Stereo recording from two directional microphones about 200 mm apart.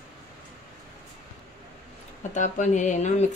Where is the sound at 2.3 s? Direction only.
35° left (ahead or behind).